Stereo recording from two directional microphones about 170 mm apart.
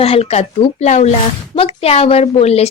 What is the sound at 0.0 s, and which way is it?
Speech, 35° left (ahead or behind).